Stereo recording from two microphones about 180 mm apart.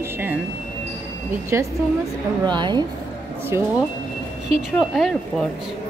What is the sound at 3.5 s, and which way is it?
Speech, 15° right (ahead or behind).